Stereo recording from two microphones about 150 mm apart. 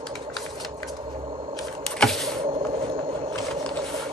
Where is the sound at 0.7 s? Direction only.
35° right (ahead or behind).